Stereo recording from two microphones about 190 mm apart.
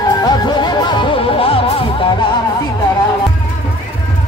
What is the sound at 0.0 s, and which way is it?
Music, 20° left (ahead or behind).